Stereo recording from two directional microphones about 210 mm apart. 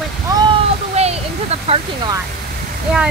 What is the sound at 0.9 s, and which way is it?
Speech, 30° right (ahead or behind).